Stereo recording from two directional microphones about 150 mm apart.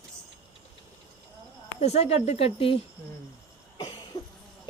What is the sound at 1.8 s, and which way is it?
Speech, 45° left (ahead or behind).